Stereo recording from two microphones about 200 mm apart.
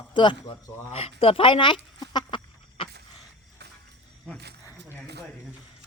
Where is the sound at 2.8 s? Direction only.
25° left (ahead or behind).